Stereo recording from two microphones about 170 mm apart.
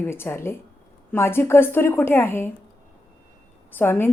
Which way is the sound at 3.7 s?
15° left (ahead or behind).